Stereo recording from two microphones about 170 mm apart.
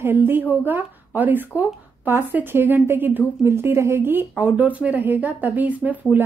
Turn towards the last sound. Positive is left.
turn(degrees=-10)  # may be behind; listen again after turning